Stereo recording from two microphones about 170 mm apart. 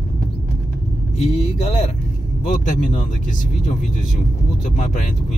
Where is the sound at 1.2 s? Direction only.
40° left (ahead or behind).